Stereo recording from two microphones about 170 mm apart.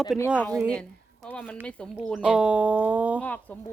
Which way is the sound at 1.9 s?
5° right (ahead or behind).